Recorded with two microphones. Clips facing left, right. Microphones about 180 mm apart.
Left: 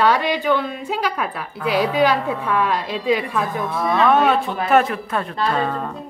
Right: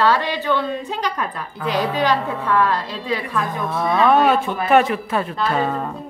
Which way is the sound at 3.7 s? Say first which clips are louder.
Right 1 dB; centre (ahead or behind).